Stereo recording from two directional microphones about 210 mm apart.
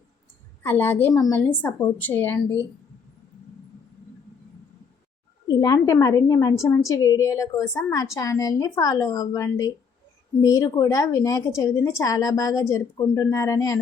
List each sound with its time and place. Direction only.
0.6 s a woman's voice: 10° left (ahead or behind)
5.5 s a woman's voice: 15° left (ahead or behind)